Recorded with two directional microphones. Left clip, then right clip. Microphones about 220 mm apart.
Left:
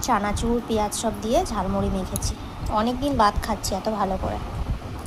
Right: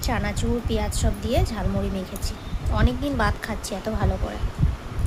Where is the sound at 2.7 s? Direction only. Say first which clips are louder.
Left 4 dB; centre (ahead or behind).